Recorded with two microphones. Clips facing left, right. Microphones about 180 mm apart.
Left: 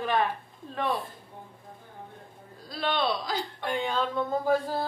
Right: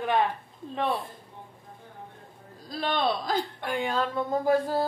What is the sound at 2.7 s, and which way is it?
Speech, 45° right (ahead or behind).